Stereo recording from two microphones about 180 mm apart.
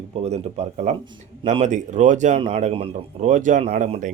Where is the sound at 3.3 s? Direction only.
45° right (ahead or behind).